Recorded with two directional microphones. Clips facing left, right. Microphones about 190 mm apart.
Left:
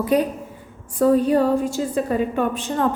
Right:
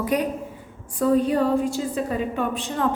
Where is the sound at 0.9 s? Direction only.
40° left (ahead or behind).